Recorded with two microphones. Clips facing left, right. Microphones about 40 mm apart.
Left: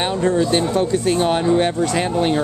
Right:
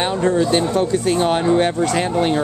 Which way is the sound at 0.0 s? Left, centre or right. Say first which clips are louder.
Right 1 dB; centre.